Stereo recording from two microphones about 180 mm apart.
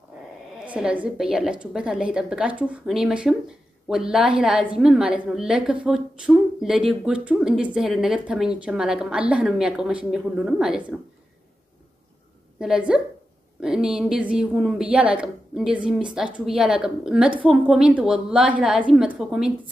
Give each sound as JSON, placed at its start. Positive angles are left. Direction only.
{"t": 0.7, "sound": "a woman's voice", "side_deg": -5}
{"t": 12.5, "sound": "a woman's voice", "side_deg": -5}